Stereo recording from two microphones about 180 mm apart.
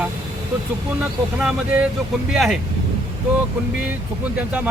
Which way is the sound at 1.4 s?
5° right (ahead or behind).